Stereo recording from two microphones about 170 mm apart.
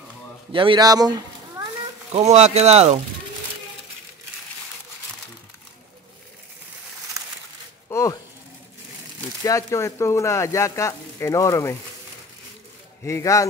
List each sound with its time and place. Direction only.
0.5 s a man's voice: 30° right (ahead or behind)
2.1 s speech: 40° right (ahead or behind)
7.9 s a sound: 20° left (ahead or behind)
9.4 s speech: 20° left (ahead or behind)
13.0 s speech: 15° left (ahead or behind)